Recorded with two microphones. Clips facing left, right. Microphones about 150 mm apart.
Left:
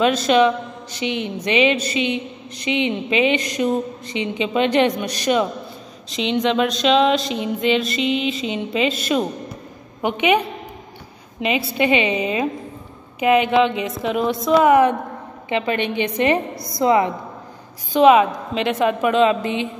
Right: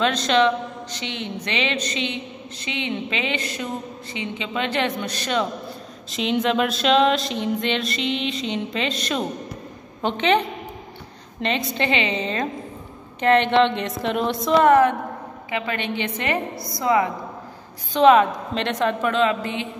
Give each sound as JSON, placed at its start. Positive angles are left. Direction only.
{"t": 0.0, "sound": "a woman's voice", "side_deg": 10}
{"t": 6.0, "sound": "a sound", "side_deg": 0}
{"t": 10.0, "sound": "a woman's voice", "side_deg": 10}
{"t": 11.4, "sound": "a woman's voice", "side_deg": 10}
{"t": 13.2, "sound": "a sound", "side_deg": 5}
{"t": 15.5, "sound": "a woman's voice", "side_deg": 20}
{"t": 17.9, "sound": "a woman's voice", "side_deg": 5}